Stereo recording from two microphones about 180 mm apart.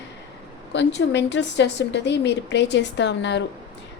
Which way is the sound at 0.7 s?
80° left.